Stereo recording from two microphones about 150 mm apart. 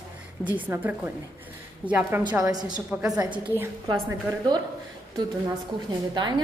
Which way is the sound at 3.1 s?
25° right (ahead or behind).